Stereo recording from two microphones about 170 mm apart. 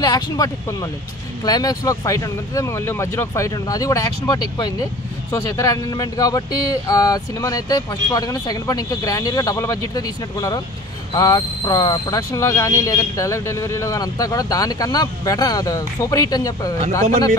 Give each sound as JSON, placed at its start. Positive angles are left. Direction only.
{"t": 0.0, "sound": "speech", "side_deg": 20}